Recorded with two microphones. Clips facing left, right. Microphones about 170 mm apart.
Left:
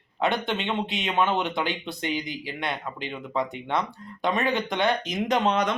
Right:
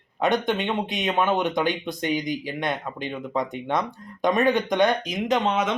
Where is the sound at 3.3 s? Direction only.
15° right (ahead or behind).